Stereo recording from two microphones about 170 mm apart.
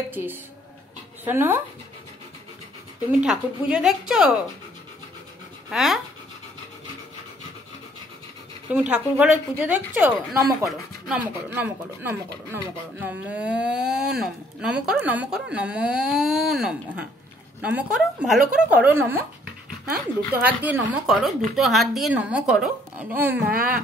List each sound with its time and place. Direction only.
0.1 s a woman's voice: 10° right (ahead or behind)
3.1 s speech: 5° right (ahead or behind)
5.7 s speech: centre (ahead or behind)
8.7 s a woman's voice: 10° right (ahead or behind)
20.3 s a woman's voice: 10° right (ahead or behind)